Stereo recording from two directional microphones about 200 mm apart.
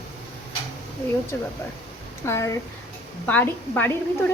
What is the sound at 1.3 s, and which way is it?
Speech, 10° left (ahead or behind).